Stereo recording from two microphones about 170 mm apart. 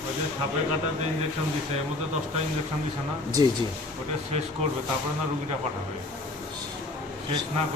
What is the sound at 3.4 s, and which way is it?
Speech, 25° right (ahead or behind).